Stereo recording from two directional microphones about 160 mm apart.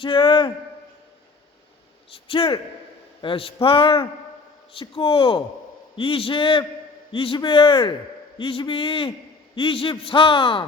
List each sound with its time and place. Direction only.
0.0 s a man's voice: 30° left (ahead or behind)
2.2 s a man's voice: 35° left (ahead or behind)